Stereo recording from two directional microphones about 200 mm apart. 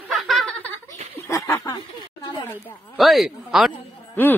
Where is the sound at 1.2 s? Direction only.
15° left (ahead or behind).